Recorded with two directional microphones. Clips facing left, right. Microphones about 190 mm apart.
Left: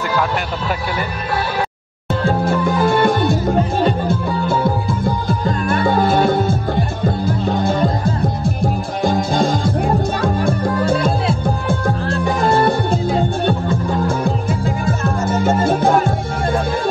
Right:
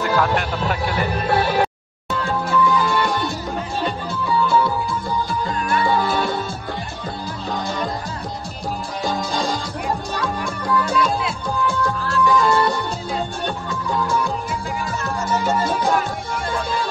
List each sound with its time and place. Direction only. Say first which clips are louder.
2.5 s music: even; 55° left (ahead or behind)
9.0 s music: left 7 dB; 55° left (ahead or behind)
15.3 s music: left 4 dB; 50° left (ahead or behind)